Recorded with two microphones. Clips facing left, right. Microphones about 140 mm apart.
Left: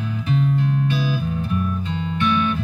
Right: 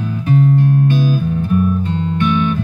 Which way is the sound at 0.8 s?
50° right (ahead or behind).